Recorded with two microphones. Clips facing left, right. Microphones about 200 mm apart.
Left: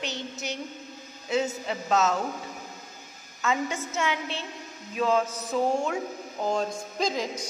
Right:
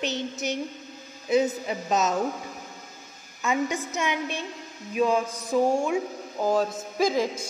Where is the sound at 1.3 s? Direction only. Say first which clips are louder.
Right 4 dB; 15° right (ahead or behind).